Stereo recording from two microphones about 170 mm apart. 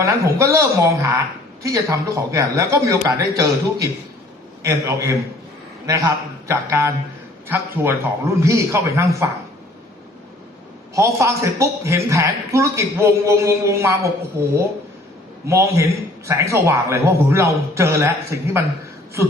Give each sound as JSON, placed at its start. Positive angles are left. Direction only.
{"t": 0.0, "sound": "a man's voice", "side_deg": -15}
{"t": 10.9, "sound": "a man's voice", "side_deg": -15}